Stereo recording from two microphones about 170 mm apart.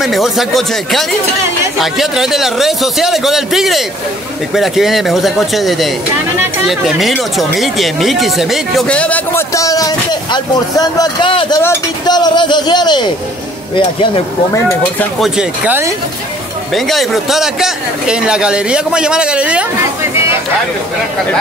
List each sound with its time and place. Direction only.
0.0 s a man's voice: centre (ahead or behind); by 13.1 s 25° left (ahead or behind)
15.1 s speech: 5° right (ahead or behind)
16.7 s a man's voice: centre (ahead or behind)